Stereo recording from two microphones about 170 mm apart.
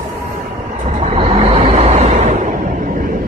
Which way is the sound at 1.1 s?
40° right (ahead or behind).